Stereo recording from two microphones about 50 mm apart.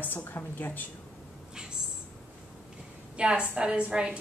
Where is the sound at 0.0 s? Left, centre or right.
Left.